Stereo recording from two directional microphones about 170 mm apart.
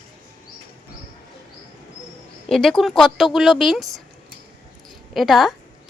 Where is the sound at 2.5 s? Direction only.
Centre (ahead or behind).